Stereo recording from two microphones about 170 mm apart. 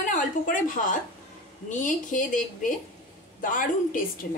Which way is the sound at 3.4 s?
55° left (ahead or behind).